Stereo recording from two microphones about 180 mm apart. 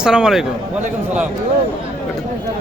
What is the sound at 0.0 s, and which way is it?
Speech, 5° right (ahead or behind).